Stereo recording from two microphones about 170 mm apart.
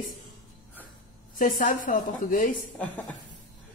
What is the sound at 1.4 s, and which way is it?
A woman's voice, 55° left (ahead or behind).